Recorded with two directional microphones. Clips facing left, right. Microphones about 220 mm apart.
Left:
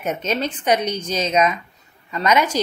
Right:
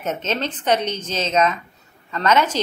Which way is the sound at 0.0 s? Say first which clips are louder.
Left 1 dB; 10° left (ahead or behind).